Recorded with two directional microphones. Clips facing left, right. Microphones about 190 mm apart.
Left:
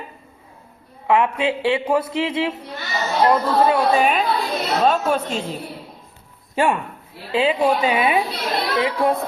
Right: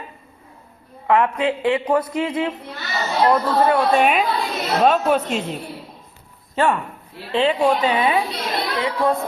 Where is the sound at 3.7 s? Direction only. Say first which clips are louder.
Right 1 dB; centre (ahead or behind).